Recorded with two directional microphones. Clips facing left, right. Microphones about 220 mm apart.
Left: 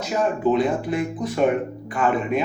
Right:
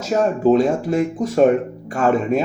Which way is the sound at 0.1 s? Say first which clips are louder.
Right 5 dB; 40° right (ahead or behind).